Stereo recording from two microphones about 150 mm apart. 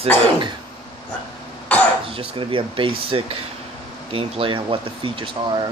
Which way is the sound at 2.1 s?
35° right (ahead or behind).